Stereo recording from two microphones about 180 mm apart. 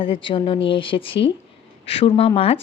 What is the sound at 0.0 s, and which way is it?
Speech, 30° left (ahead or behind).